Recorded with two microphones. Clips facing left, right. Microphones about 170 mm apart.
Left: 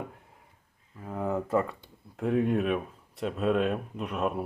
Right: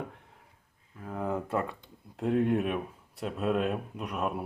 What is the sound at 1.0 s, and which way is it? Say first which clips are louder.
Speech: left 2 dB; 5° left (ahead or behind).